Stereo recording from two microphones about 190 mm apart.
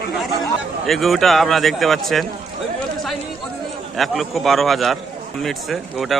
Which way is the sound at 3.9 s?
Centre (ahead or behind).